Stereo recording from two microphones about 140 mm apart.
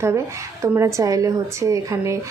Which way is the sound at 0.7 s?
20° right (ahead or behind).